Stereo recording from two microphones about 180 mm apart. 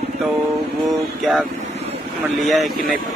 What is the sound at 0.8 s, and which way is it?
Speech, centre (ahead or behind).